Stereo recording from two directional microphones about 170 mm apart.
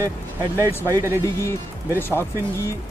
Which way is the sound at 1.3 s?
15° left (ahead or behind).